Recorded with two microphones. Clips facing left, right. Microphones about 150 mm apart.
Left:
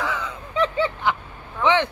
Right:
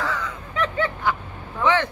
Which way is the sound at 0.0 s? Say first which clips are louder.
Even; 20° left (ahead or behind).